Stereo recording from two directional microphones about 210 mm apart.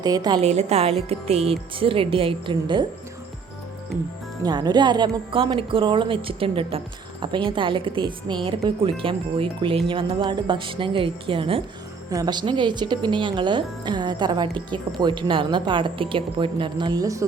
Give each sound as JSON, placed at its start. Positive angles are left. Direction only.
{"t": 0.0, "sound": "speech", "side_deg": -20}
{"t": 4.4, "sound": "speech", "side_deg": -20}